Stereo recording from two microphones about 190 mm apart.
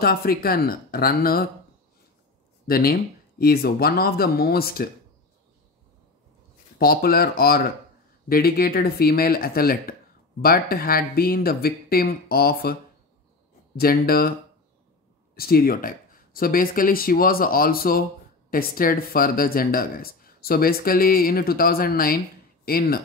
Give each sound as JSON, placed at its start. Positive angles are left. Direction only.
{"t": 0.0, "sound": "speech", "side_deg": 55}
{"t": 2.6, "sound": "speech", "side_deg": 50}
{"t": 6.8, "sound": "speech", "side_deg": 50}
{"t": 13.7, "sound": "speech", "side_deg": 50}
{"t": 15.3, "sound": "speech", "side_deg": 50}